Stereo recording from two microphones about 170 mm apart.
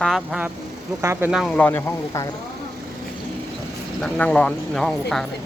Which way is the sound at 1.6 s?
10° left (ahead or behind).